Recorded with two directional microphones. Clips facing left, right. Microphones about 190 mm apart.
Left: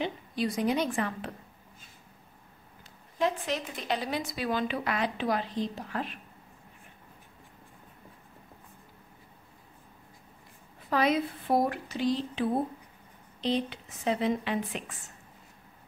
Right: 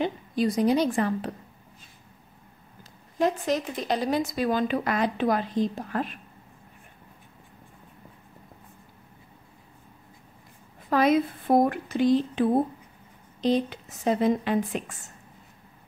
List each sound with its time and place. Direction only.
0.0 s a woman's voice: 40° right (ahead or behind)
3.2 s speech: 40° right (ahead or behind)
10.9 s speech: 45° right (ahead or behind)